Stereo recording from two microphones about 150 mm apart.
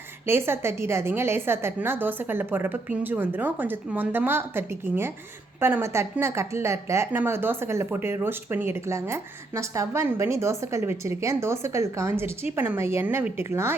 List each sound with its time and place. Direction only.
0.3 s speech: 15° right (ahead or behind)